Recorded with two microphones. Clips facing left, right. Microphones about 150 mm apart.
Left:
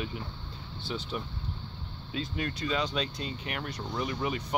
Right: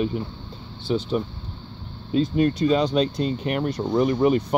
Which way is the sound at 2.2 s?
40° right (ahead or behind).